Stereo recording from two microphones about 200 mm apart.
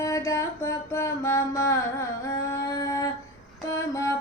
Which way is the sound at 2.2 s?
15° left (ahead or behind).